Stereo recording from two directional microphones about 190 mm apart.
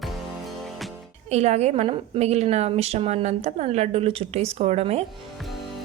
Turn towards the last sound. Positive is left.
turn(degrees=-35)  # may be behind; listen again after turning